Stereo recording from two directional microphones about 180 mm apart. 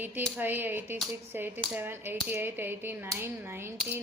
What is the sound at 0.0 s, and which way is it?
Speech, 10° right (ahead or behind).